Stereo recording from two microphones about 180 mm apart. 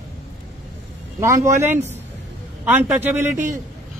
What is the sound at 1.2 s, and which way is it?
Speech, 15° right (ahead or behind).